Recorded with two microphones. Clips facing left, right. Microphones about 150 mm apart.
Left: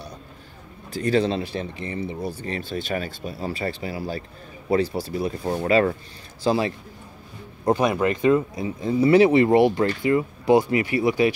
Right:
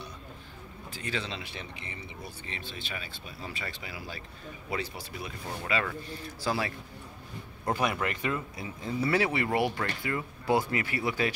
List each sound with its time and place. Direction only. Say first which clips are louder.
0.9 s speech: left 15 dB; 40° left (ahead or behind)
6.4 s speech: left 10 dB; 25° left (ahead or behind)